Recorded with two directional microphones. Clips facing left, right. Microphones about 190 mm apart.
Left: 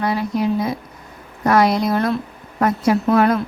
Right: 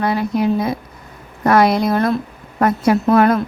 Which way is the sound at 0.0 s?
55° right (ahead or behind).